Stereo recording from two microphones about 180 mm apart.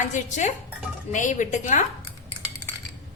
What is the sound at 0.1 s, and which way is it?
Dishes, 40° left (ahead or behind).